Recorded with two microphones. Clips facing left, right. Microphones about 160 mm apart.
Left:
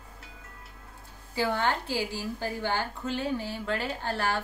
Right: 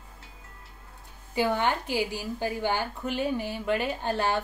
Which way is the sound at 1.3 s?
15° right (ahead or behind).